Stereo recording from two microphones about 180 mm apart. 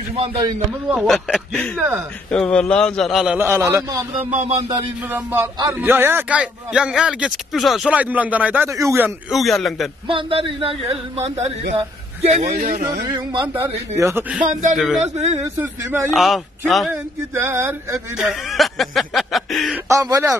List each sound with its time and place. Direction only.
0.2 s speech: 30° right (ahead or behind)
0.8 s a man's voice: 5° right (ahead or behind)
2.3 s speech: 5° left (ahead or behind)
3.3 s a man's voice: 15° right (ahead or behind)
9.3 s speech: centre (ahead or behind)
10.0 s a man's voice: 30° right (ahead or behind); by 12.8 s 45° right (ahead or behind)
13.1 s speech: 25° right (ahead or behind)
13.9 s a man's voice: 15° right (ahead or behind)
14.5 s speech: 40° right (ahead or behind)
16.1 s speech: centre (ahead or behind)
16.9 s a man's voice: 15° right (ahead or behind)
18.1 s speech: 5° right (ahead or behind)
19.9 s a man's voice: 20° right (ahead or behind)